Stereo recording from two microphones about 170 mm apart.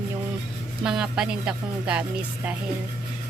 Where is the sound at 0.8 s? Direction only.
5° right (ahead or behind).